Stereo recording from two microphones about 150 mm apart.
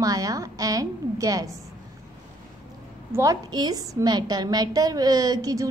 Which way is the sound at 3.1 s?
25° right (ahead or behind).